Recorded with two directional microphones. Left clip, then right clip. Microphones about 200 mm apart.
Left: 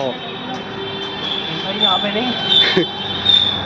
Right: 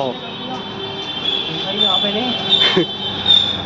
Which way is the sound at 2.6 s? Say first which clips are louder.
Left 2 dB; 10° right (ahead or behind).